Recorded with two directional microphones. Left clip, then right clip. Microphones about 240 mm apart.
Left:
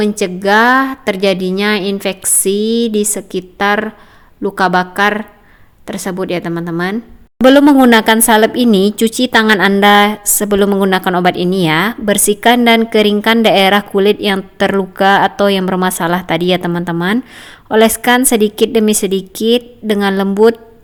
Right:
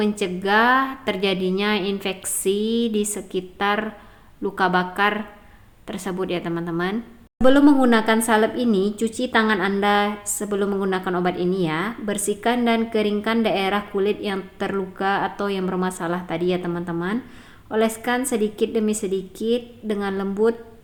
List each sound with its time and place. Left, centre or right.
0.0 s a woman's voice: left